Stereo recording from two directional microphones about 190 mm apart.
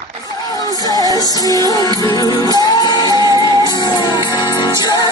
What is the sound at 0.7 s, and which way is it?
Music, 20° left (ahead or behind).